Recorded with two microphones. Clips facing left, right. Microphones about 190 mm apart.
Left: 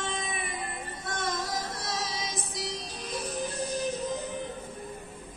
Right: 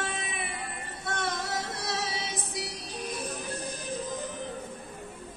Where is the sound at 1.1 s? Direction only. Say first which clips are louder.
Right 1 dB; 65° right (ahead or behind).